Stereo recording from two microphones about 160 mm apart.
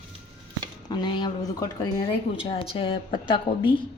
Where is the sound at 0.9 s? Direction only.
30° left (ahead or behind).